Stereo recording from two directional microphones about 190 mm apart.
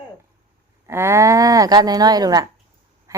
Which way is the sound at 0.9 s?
15° right (ahead or behind).